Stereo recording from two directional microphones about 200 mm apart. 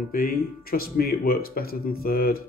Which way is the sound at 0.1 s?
45° left (ahead or behind).